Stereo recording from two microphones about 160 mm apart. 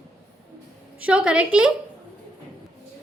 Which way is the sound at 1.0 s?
5° right (ahead or behind).